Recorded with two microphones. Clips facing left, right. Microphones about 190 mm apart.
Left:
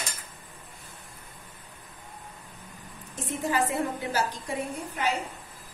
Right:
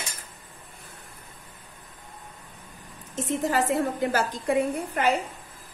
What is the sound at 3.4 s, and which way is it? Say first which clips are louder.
A woman's voice: right 2 dB; 40° right (ahead or behind).